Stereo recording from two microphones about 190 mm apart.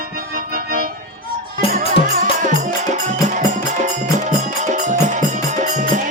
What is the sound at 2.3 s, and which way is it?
Music, 40° right (ahead or behind).